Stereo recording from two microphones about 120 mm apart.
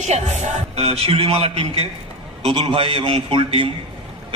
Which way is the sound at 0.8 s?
55° right (ahead or behind).